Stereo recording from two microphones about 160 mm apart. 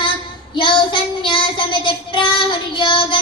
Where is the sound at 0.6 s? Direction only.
30° left (ahead or behind).